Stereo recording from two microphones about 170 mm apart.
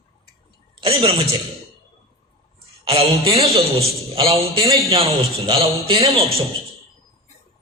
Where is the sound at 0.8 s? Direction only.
35° right (ahead or behind).